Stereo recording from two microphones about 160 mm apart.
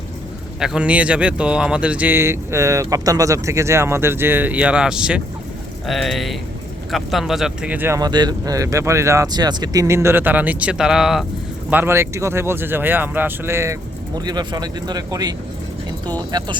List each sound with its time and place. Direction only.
0.6 s speech: 5° right (ahead or behind)
11.7 s speech: 15° right (ahead or behind)